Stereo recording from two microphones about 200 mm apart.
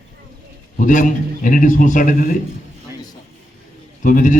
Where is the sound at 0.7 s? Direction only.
40° left (ahead or behind).